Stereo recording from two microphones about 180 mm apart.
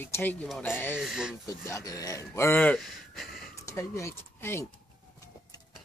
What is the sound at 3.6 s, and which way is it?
Speech, 15° left (ahead or behind).